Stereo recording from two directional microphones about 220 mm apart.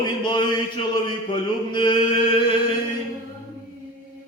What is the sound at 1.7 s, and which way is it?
Mantra, 20° left (ahead or behind).